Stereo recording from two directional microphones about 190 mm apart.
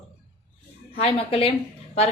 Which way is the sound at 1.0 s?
30° left (ahead or behind).